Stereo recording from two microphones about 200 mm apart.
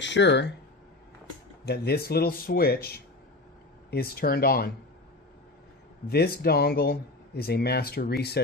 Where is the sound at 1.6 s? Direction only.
55° left (ahead or behind).